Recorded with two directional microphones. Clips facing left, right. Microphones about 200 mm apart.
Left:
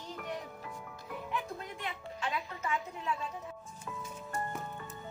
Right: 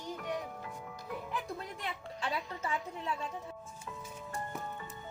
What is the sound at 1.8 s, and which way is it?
Music, 35° right (ahead or behind).